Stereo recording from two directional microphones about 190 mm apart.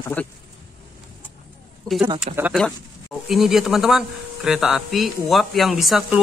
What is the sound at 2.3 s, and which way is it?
Speech, 40° right (ahead or behind).